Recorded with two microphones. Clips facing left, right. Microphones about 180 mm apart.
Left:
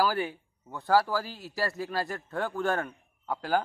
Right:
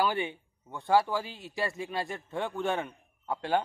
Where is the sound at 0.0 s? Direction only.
Centre (ahead or behind).